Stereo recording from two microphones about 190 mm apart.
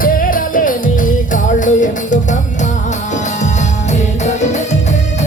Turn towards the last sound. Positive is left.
turn(degrees=35)  # may be behind; listen again after turning